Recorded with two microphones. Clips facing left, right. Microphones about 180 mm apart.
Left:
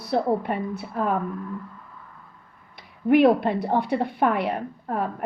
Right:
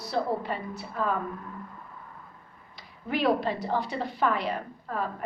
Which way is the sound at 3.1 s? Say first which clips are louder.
Left 9 dB; 55° left (ahead or behind).